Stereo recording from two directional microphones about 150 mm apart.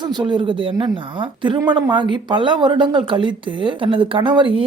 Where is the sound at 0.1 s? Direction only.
30° right (ahead or behind).